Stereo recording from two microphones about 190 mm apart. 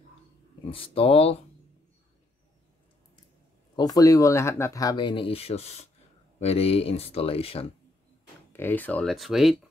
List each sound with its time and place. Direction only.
0.7 s speech: 30° left (ahead or behind)
3.7 s speech: 20° left (ahead or behind)
8.5 s speech: 10° left (ahead or behind)